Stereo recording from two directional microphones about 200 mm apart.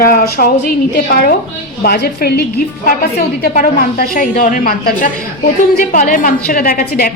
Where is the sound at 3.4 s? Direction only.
45° left (ahead or behind).